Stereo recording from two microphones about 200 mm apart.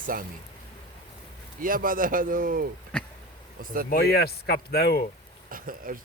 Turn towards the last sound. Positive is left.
turn(degrees=-45)  # may be behind; listen again after turning